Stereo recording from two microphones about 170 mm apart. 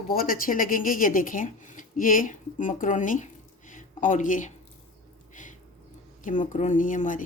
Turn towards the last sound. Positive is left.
turn(degrees=50)  # may be behind; listen again after turning